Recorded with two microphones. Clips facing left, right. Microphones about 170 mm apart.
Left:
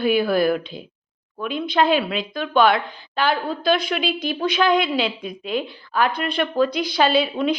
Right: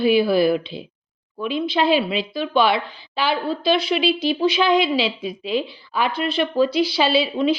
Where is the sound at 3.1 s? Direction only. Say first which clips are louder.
Even; 5° right (ahead or behind).